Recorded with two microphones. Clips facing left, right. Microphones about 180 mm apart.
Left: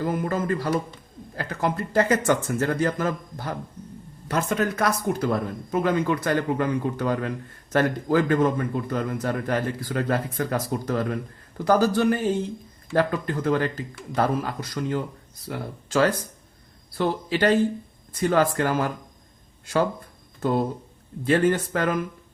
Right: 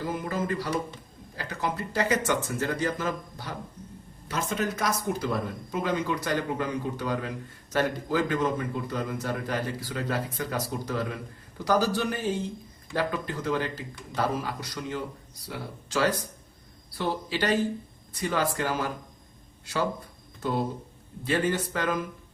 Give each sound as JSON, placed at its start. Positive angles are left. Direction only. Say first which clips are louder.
{"t": 0.0, "sound": "a man's voice", "louder": "left 5 dB", "side_deg": 50}
{"t": 21.2, "sound": "speech", "louder": "left 6 dB", "side_deg": 50}